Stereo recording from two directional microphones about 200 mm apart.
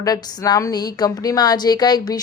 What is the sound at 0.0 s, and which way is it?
A woman's voice, 20° left (ahead or behind).